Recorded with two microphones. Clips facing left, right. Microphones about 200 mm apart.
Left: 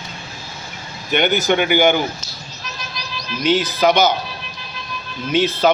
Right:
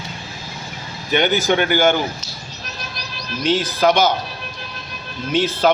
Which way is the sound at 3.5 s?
Centre (ahead or behind).